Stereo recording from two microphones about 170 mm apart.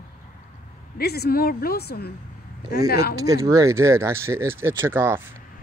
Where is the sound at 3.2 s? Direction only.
20° right (ahead or behind).